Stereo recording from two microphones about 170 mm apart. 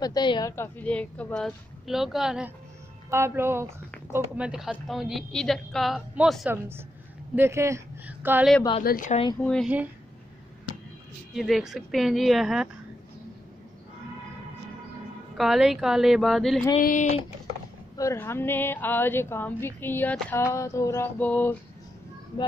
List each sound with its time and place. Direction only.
0.0 s speech: 25° left (ahead or behind); by 2.5 s 5° right (ahead or behind)
3.1 s a woman's voice: 15° right (ahead or behind)
7.3 s speech: 15° right (ahead or behind)
8.8 s speech: 55° left (ahead or behind)
9.4 s a woman's voice: 5° left (ahead or behind)
11.3 s a woman's voice: centre (ahead or behind)
15.3 s a woman's voice: centre (ahead or behind)
16.8 s speech: 45° left (ahead or behind)
17.9 s speech: 15° left (ahead or behind)